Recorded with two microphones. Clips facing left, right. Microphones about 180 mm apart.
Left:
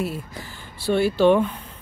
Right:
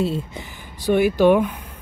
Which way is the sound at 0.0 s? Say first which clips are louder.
Right 5 dB; 25° right (ahead or behind).